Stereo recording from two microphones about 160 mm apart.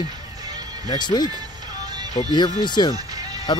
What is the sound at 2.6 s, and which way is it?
Speech, 25° left (ahead or behind).